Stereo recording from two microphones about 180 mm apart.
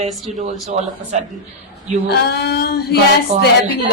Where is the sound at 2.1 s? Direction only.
65° left (ahead or behind).